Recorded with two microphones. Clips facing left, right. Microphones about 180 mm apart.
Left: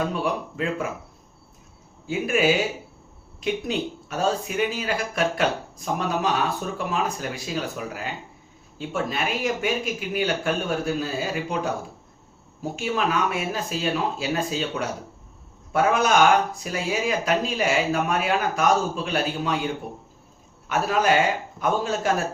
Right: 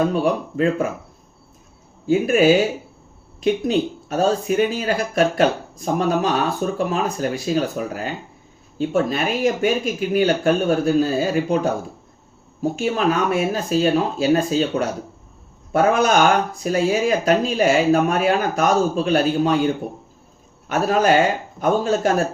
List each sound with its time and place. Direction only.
0.1 s speech: 40° right (ahead or behind)
2.0 s speech: 40° right (ahead or behind)
12.7 s speech: 40° right (ahead or behind)